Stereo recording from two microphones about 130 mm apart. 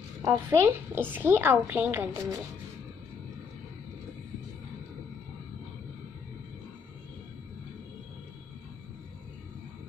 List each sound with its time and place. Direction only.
0.2 s a woman's voice: 30° right (ahead or behind)
0.7 s a woman's voice: 15° right (ahead or behind)